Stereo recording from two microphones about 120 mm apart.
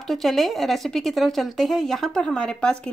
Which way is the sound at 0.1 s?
Centre (ahead or behind).